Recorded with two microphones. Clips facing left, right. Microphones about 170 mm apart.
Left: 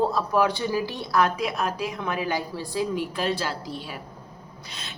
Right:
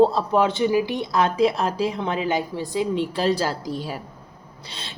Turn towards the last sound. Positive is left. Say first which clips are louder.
# right 2 dB
turn(degrees=-30)  # may be behind; listen again after turning